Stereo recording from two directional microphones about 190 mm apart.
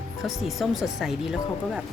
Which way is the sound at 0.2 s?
Centre (ahead or behind).